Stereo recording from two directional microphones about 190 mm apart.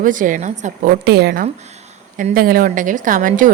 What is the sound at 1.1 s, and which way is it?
Speech, 60° right (ahead or behind).